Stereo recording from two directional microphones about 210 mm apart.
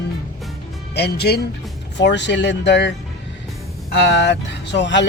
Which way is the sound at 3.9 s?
55° left (ahead or behind).